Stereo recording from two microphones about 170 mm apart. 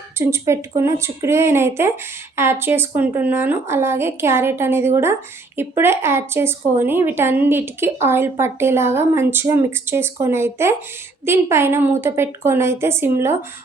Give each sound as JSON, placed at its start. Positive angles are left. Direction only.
{"t": 0.2, "sound": "speech", "side_deg": -15}